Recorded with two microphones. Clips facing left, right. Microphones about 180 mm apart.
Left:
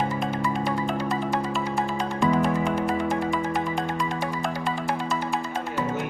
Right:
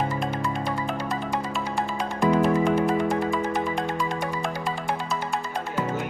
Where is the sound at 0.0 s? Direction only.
Centre (ahead or behind).